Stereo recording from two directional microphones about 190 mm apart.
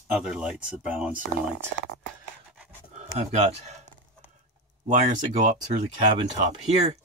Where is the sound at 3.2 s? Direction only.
35° right (ahead or behind).